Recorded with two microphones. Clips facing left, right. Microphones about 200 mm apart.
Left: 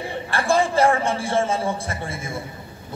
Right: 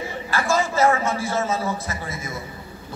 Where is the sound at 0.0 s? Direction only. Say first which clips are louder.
Even; 30° left (ahead or behind).